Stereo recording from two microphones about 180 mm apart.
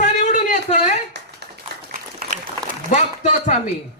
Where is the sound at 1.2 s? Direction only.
70° right (ahead or behind).